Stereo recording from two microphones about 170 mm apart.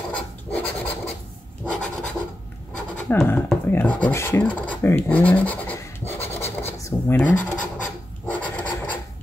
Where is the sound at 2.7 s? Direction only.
5° left (ahead or behind).